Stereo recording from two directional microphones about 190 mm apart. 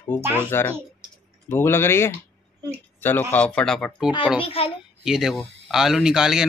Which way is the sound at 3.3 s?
5° left (ahead or behind).